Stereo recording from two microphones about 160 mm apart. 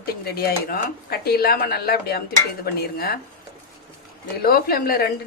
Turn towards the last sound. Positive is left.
turn(degrees=70)  # may be behind; listen again after turning